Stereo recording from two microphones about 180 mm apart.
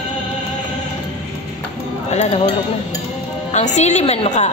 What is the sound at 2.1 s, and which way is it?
Speech, 40° left (ahead or behind).